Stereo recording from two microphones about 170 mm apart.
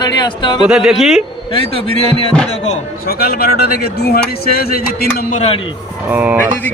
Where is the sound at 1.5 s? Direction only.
35° left (ahead or behind).